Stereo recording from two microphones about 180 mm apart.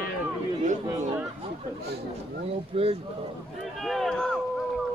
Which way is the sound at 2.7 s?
35° right (ahead or behind).